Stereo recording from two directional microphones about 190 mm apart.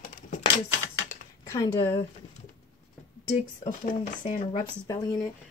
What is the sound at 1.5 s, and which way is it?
Speech, 15° left (ahead or behind).